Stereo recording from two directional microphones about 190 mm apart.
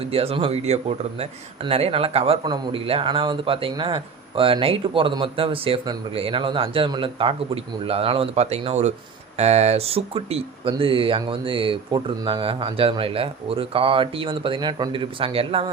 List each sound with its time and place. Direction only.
0.0 s speech: 30° right (ahead or behind)